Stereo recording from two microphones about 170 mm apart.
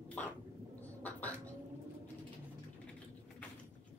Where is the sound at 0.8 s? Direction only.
10° left (ahead or behind).